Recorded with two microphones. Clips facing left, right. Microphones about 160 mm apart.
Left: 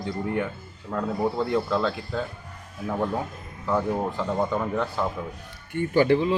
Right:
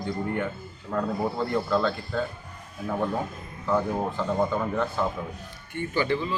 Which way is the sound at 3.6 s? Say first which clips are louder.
Left 1 dB; centre (ahead or behind).